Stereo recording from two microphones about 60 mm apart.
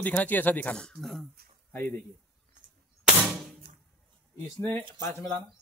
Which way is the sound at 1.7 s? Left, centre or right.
Left.